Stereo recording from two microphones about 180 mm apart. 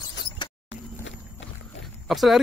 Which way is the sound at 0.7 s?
90° left.